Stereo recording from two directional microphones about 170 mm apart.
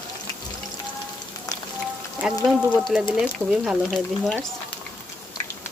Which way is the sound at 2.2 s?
5° right (ahead or behind).